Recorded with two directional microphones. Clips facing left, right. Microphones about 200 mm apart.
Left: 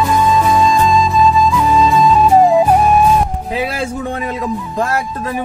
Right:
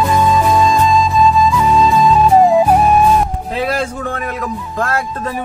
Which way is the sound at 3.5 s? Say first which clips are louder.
Right 1 dB; 5° left (ahead or behind).